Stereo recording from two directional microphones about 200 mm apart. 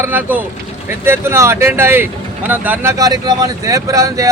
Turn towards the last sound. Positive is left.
turn(degrees=-15)  # may be behind; listen again after turning